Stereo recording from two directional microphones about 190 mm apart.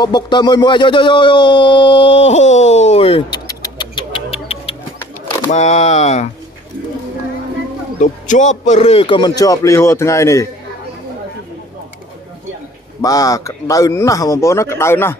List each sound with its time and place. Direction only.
0.0 s speech: 25° left (ahead or behind)
8.0 s a man's voice: 40° left (ahead or behind); by 10.5 s 15° left (ahead or behind)
13.0 s a man's voice: 20° left (ahead or behind)